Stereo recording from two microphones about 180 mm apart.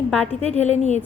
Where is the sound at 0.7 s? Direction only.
40° left (ahead or behind).